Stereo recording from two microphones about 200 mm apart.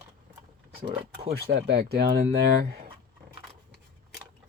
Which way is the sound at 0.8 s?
25° right (ahead or behind).